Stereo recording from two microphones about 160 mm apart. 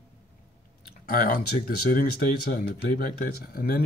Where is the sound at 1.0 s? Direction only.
65° left (ahead or behind).